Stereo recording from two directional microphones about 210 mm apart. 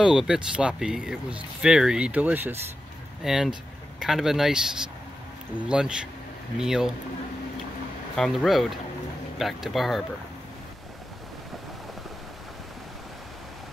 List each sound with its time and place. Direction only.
0.0 s speech: 5° right (ahead or behind)
8.2 s speech: centre (ahead or behind)